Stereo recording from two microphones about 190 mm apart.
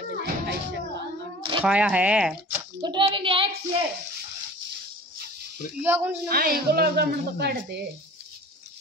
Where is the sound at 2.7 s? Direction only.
25° right (ahead or behind).